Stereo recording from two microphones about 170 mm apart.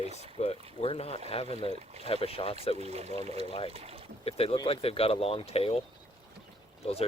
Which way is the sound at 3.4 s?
35° left (ahead or behind).